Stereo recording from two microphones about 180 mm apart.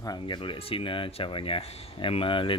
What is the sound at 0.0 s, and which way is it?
Speech, 25° left (ahead or behind).